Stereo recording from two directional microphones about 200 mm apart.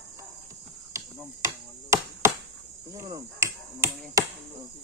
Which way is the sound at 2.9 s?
15° right (ahead or behind).